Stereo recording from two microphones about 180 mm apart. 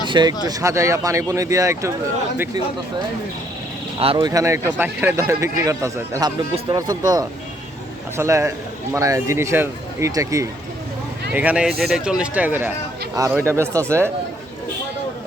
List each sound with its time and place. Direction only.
0.1 s speech: 25° right (ahead or behind)
4.0 s speech: 30° right (ahead or behind)
4.3 s speech: 15° right (ahead or behind)
11.3 s speech: 5° right (ahead or behind)